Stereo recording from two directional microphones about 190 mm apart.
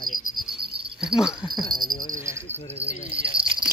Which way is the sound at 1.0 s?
5° right (ahead or behind).